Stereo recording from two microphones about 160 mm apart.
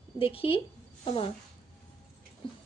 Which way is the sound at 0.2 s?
35° left (ahead or behind).